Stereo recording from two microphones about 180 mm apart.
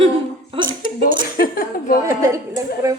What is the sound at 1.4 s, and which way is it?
Speech, 55° left (ahead or behind).